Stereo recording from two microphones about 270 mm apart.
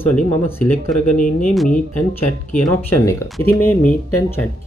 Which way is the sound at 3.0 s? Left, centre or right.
Centre.